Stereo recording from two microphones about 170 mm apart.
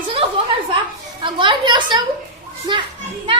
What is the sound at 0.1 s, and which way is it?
Chuckle, 35° right (ahead or behind).